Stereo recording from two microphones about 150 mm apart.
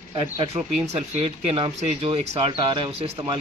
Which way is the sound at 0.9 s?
40° right (ahead or behind).